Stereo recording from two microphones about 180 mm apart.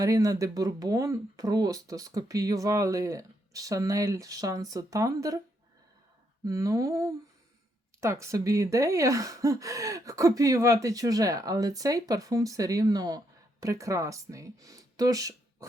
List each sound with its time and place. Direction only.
0.0 s speech: 20° right (ahead or behind)
6.4 s speech: 20° right (ahead or behind)